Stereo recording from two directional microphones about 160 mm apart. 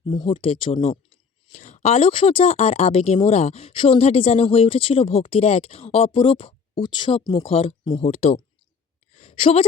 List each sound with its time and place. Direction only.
0.0 s speech: 25° left (ahead or behind)
1.1 s speech: 45° left (ahead or behind)
9.1 s a sound: 40° left (ahead or behind)